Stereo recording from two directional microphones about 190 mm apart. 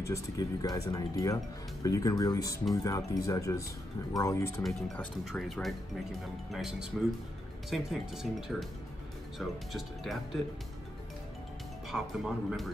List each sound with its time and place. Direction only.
0.0 s speech: 15° left (ahead or behind)
4.6 s speech: centre (ahead or behind)
9.7 s speech: centre (ahead or behind)
11.9 s speech: centre (ahead or behind)